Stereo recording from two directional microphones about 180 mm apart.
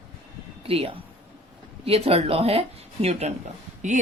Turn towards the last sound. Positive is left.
turn(degrees=-45)  # may be behind; listen again after turning